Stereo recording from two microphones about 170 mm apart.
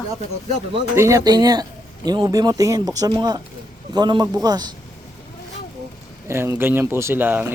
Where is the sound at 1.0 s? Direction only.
20° right (ahead or behind).